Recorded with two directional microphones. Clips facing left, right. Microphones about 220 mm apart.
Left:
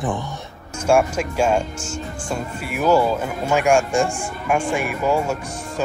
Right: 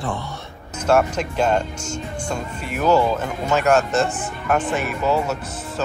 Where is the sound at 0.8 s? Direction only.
10° left (ahead or behind).